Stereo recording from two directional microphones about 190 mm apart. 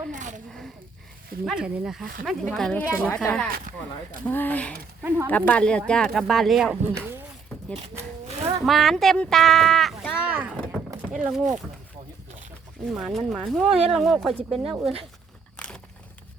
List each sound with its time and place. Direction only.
0.1 s speech: 40° right (ahead or behind)
1.5 s speech: 5° right (ahead or behind)
5.0 s speech: 10° right (ahead or behind)
5.3 s speech: 5° left (ahead or behind)
6.9 s speech: 10° right (ahead or behind)
8.3 s a sound: 35° right (ahead or behind)
8.6 s speech: centre (ahead or behind)
10.6 s a sound: centre (ahead or behind)
11.1 s speech: 5° right (ahead or behind)
12.8 s speech: centre (ahead or behind)
15.5 s a sound: 5° left (ahead or behind)